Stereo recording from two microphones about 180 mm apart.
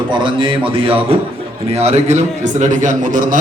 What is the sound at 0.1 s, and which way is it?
A man's voice, 25° right (ahead or behind).